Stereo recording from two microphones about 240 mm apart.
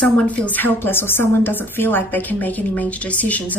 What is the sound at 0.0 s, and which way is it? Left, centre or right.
A woman's voice, centre.